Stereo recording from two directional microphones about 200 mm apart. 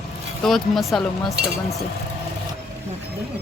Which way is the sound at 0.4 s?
Centre (ahead or behind).